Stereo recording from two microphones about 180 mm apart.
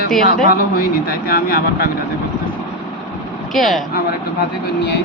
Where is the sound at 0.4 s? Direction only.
55° left (ahead or behind).